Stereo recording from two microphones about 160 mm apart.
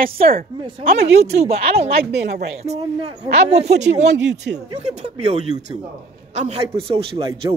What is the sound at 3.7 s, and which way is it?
Speech, 45° right (ahead or behind).